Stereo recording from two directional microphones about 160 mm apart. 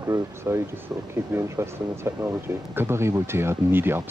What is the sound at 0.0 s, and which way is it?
Speech, 20° right (ahead or behind).